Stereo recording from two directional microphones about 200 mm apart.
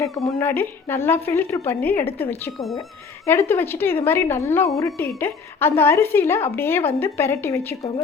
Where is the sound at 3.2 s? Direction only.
15° left (ahead or behind).